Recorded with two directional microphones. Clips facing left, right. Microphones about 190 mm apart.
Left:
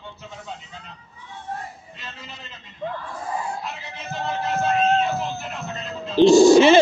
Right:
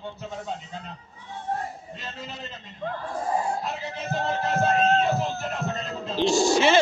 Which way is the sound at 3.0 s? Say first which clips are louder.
Right 3 dB; 40° right (ahead or behind).